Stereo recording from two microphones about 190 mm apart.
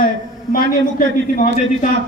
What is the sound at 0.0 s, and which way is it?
A man's voice, 50° left (ahead or behind).